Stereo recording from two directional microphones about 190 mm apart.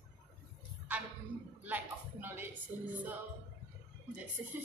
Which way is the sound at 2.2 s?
10° right (ahead or behind).